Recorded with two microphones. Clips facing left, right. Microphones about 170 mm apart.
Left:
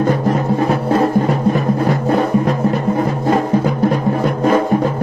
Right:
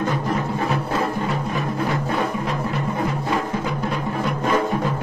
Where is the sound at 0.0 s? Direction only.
50° left (ahead or behind).